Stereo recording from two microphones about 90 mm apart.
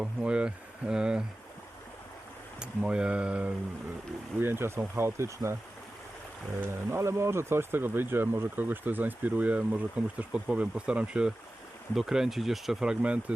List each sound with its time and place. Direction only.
0.0 s speech: 10° right (ahead or behind)
2.6 s speech: 10° right (ahead or behind)
4.4 s speech: 25° right (ahead or behind)
6.6 s speech: 30° right (ahead or behind); by 13.3 s 15° right (ahead or behind)